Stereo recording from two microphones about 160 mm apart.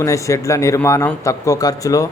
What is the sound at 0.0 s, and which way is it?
Speech, 20° left (ahead or behind).